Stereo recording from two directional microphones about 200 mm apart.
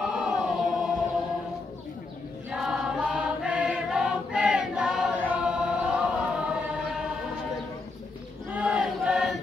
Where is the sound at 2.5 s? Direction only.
Centre (ahead or behind).